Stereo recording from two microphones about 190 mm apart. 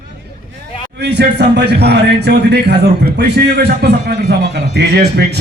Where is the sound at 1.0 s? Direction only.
60° right (ahead or behind).